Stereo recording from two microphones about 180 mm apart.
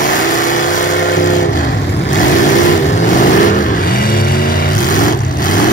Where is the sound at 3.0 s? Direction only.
45° left (ahead or behind).